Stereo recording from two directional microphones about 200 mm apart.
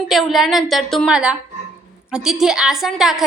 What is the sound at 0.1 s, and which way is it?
A woman's voice, centre (ahead or behind).